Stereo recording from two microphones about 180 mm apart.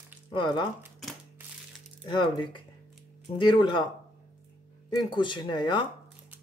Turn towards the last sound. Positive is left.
turn(degrees=25)  # may be behind; listen again after turning